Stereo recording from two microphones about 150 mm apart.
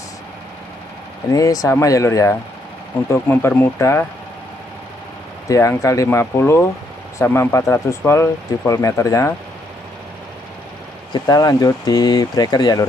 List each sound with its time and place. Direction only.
1.3 s speech: 20° left (ahead or behind)
5.5 s speech: 20° left (ahead or behind)
11.1 s speech: 25° left (ahead or behind)